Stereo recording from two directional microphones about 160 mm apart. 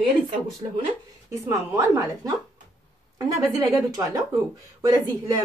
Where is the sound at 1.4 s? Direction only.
15° right (ahead or behind).